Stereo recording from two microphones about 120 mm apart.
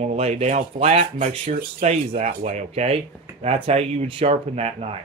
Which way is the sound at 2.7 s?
55° right (ahead or behind).